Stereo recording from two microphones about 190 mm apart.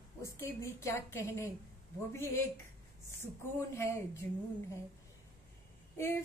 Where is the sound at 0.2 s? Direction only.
15° left (ahead or behind).